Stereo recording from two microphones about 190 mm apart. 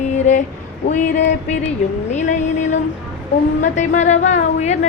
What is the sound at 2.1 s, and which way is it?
Speech, 40° left (ahead or behind).